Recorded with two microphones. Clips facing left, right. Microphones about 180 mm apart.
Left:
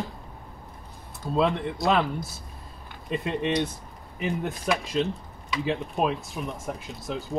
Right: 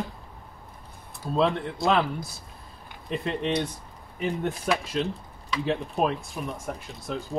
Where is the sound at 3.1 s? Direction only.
5° left (ahead or behind).